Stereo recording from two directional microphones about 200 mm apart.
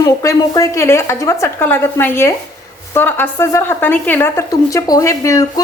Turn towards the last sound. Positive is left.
turn(degrees=15)  # may be behind; listen again after turning